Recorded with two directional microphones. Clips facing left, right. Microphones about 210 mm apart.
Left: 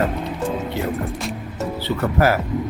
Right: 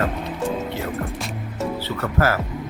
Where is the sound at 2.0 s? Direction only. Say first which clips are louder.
Left 3 dB; 20° left (ahead or behind).